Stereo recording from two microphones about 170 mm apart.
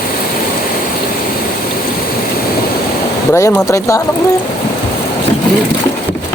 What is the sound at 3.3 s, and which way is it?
Speech, 15° left (ahead or behind).